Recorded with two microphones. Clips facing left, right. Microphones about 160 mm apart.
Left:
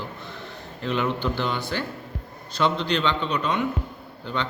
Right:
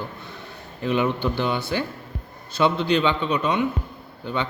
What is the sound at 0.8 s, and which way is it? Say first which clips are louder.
A man's voice: right 3 dB; 10° right (ahead or behind).